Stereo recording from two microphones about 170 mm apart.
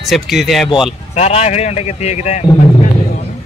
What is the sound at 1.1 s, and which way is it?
A man's voice, 40° left (ahead or behind).